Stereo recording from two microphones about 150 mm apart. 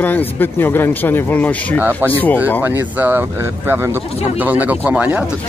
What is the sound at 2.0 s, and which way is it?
Speech, 10° left (ahead or behind).